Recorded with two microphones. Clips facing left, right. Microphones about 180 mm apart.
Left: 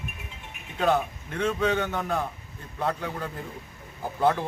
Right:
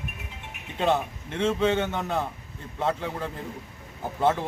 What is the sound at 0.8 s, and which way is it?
A man's voice, 25° right (ahead or behind).